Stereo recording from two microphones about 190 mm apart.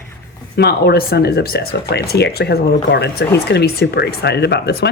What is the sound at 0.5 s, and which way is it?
Speech, 60° left (ahead or behind).